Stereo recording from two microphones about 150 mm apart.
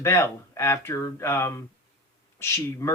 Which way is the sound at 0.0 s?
20° left (ahead or behind).